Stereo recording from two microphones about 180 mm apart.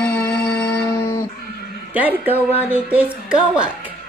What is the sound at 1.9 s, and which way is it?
A man's voice, 10° right (ahead or behind).